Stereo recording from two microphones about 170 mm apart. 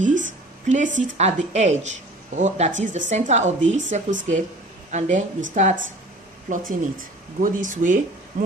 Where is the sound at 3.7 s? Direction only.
90° right.